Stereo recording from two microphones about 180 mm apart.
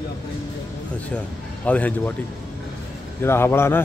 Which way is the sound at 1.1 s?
10° left (ahead or behind).